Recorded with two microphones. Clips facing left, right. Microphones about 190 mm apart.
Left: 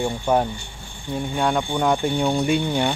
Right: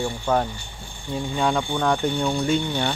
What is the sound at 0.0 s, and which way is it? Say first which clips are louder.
Speech: left 2 dB; 15° left (ahead or behind).